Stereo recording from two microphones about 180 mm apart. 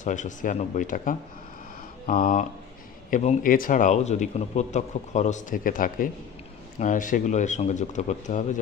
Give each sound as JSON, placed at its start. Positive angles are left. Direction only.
{"t": 0.0, "sound": "a man's voice", "side_deg": 45}